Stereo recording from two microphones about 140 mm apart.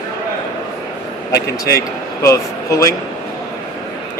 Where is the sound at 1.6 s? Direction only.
20° left (ahead or behind).